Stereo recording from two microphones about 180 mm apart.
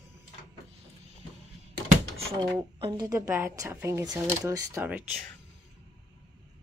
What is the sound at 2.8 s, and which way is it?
Speech, 20° right (ahead or behind).